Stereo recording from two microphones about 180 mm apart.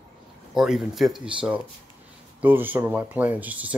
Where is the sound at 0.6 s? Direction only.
Centre (ahead or behind).